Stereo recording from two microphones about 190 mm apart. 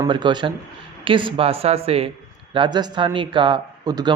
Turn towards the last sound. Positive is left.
turn(degrees=-20)  # may be behind; listen again after turning